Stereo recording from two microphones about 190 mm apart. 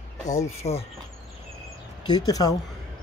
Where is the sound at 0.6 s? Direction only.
35° left (ahead or behind).